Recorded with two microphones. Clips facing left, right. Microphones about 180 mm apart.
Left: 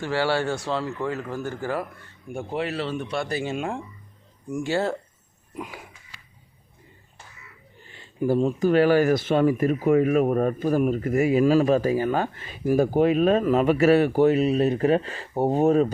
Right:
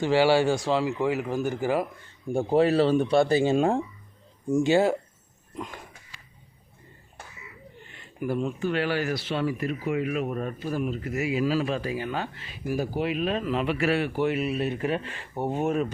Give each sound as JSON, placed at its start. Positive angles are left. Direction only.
{"t": 0.0, "sound": "speech", "side_deg": -15}
{"t": 2.2, "sound": "speech", "side_deg": -30}
{"t": 4.4, "sound": "speech", "side_deg": -20}
{"t": 5.5, "sound": "a sound", "side_deg": 10}
{"t": 7.9, "sound": "speech", "side_deg": 30}